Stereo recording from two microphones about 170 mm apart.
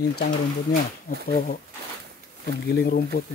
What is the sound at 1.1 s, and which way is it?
Speech, 55° left (ahead or behind).